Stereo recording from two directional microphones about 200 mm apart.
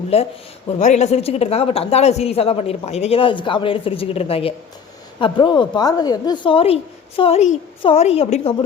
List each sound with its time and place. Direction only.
0.1 s a woman's voice: 30° left (ahead or behind)